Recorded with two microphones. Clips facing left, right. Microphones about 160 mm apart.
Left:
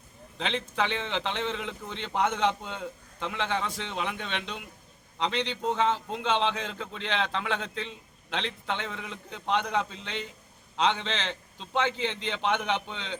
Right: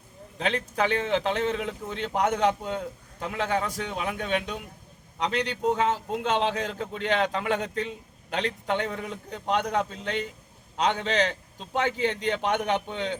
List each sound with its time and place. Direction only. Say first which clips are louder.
0.4 s speech: right 3 dB; 45° right (ahead or behind)
5.6 s speech: right 2 dB; 45° right (ahead or behind)